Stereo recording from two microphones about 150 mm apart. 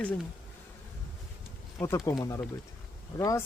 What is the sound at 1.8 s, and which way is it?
Speech, 20° left (ahead or behind).